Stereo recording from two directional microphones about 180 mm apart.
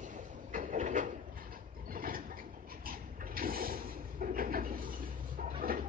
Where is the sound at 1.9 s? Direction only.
50° right (ahead or behind).